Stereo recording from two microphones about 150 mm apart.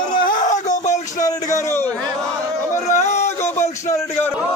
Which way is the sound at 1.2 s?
25° left (ahead or behind).